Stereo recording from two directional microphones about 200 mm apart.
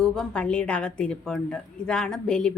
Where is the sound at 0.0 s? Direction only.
5° left (ahead or behind).